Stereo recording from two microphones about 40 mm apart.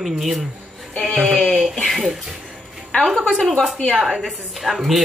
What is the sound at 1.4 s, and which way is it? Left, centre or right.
Speech, centre.